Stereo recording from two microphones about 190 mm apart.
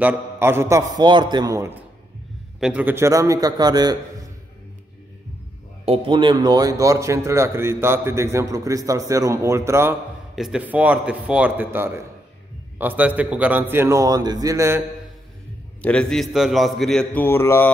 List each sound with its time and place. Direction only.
0.0 s a man's voice: 10° right (ahead or behind)
5.9 s a man's voice: 25° right (ahead or behind)
10.3 s a man's voice: 5° right (ahead or behind)
15.8 s a man's voice: 5° left (ahead or behind)